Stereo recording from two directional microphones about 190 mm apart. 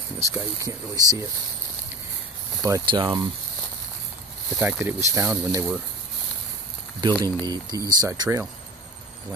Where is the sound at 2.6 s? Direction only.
20° right (ahead or behind).